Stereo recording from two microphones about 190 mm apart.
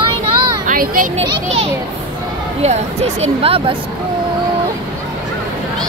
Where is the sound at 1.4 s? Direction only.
35° right (ahead or behind).